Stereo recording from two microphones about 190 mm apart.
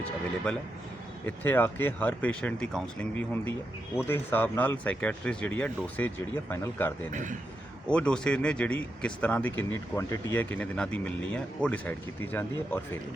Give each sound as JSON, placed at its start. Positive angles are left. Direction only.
{"t": 1.2, "sound": "speech", "side_deg": 10}
{"t": 7.1, "sound": "a man's voice", "side_deg": -40}
{"t": 7.9, "sound": "speech", "side_deg": 5}